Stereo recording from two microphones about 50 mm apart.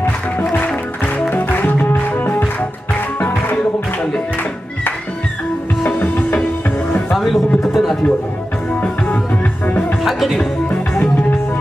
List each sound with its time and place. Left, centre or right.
0.5 s music: left
5.9 s music: left
7.2 s a sound: centre
8.8 s music: left
9.7 s music: left
10.0 s music: centre